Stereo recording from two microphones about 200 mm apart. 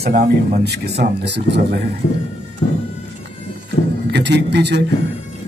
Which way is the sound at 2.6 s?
35° left (ahead or behind).